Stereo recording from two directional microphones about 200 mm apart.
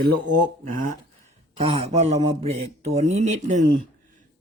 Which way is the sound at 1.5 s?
30° right (ahead or behind).